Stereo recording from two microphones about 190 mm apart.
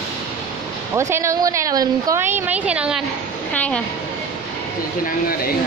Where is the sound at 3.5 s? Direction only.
5° left (ahead or behind).